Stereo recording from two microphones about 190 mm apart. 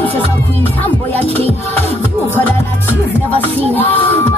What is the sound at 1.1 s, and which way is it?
Music, 30° right (ahead or behind).